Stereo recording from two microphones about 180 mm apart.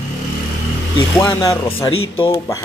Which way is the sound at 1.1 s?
25° left (ahead or behind).